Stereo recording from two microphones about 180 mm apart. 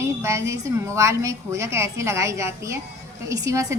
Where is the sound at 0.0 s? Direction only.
15° right (ahead or behind).